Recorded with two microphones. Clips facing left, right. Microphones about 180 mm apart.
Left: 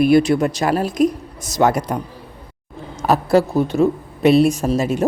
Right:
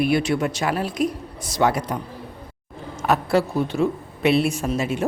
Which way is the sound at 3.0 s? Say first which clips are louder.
Left 5 dB; 40° left (ahead or behind).